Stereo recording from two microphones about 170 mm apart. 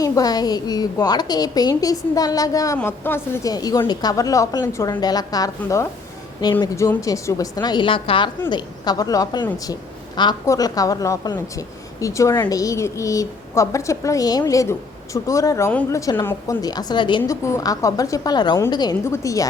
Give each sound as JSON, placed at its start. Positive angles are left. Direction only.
{"t": 0.0, "sound": "a woman's voice", "side_deg": 20}